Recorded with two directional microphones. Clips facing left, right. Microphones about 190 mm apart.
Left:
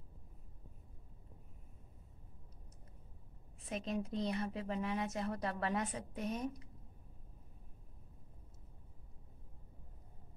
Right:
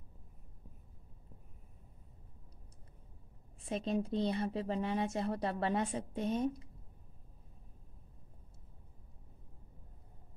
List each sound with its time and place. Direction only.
3.6 s speech: 30° right (ahead or behind)